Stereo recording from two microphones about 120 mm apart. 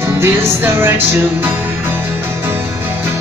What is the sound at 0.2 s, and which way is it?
Music, 20° right (ahead or behind).